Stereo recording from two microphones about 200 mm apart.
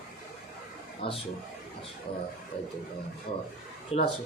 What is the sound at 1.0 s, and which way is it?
Speech, 25° left (ahead or behind).